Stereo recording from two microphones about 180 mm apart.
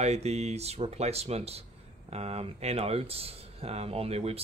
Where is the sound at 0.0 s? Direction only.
35° right (ahead or behind).